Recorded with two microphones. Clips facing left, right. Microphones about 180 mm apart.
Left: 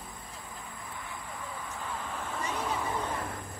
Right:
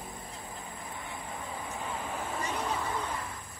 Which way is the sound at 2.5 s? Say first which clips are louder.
Left 1 dB; centre (ahead or behind).